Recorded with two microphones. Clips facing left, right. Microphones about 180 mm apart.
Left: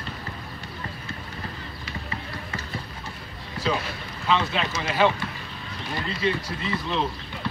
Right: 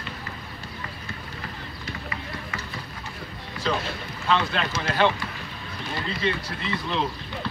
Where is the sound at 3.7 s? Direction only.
5° left (ahead or behind).